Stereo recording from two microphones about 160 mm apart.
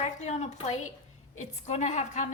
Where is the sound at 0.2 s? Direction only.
45° left (ahead or behind).